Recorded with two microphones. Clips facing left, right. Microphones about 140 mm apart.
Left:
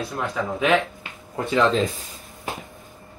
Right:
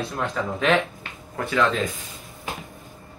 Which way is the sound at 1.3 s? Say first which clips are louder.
Left 2 dB; 20° left (ahead or behind).